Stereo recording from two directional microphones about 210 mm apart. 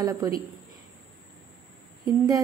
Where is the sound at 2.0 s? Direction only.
15° right (ahead or behind).